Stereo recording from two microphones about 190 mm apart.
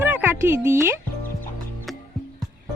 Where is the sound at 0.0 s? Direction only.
10° right (ahead or behind).